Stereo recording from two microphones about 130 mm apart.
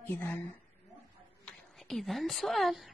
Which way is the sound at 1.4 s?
5° left (ahead or behind).